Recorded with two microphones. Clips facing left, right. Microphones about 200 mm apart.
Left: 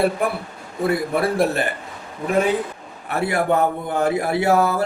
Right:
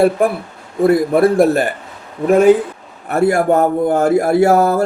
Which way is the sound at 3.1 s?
45° right (ahead or behind).